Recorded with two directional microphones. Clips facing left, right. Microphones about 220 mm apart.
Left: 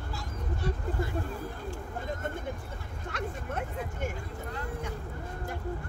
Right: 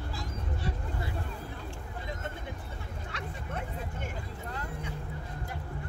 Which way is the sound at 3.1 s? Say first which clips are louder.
Left 7 dB; 45° left (ahead or behind).